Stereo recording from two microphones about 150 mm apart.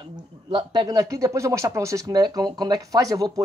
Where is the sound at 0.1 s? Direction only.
30° right (ahead or behind).